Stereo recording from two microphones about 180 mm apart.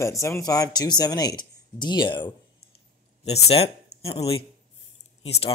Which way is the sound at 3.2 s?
35° left (ahead or behind).